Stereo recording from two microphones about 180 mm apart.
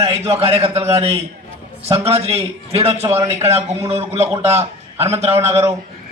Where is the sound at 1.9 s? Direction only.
35° right (ahead or behind).